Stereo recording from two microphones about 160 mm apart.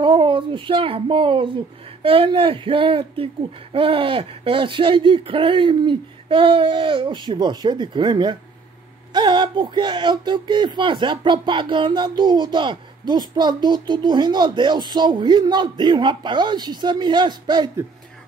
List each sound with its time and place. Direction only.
0.0 s speech: 30° right (ahead or behind)